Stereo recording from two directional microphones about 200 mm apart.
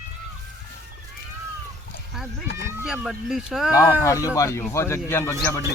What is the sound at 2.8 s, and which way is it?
Speech, centre (ahead or behind).